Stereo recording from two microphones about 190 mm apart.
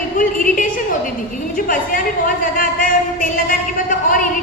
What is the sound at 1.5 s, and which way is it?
A woman's voice, 45° left (ahead or behind).